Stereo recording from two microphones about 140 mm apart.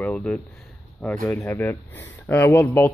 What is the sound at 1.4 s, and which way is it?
Speech, 15° left (ahead or behind).